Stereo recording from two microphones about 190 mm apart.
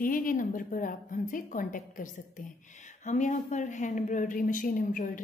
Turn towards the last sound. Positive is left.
turn(degrees=45)  # may be behind; listen again after turning